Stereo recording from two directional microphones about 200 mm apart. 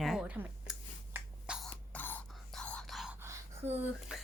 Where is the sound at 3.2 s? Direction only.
15° right (ahead or behind).